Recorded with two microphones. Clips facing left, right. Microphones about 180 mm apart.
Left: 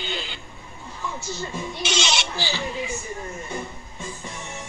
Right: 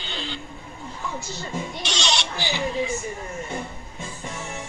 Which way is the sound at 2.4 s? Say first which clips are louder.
Right 1 dB; 20° right (ahead or behind).